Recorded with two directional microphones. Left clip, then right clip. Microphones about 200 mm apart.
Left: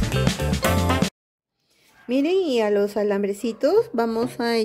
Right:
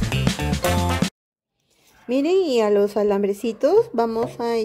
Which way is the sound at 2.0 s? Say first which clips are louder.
Right 2 dB; centre (ahead or behind).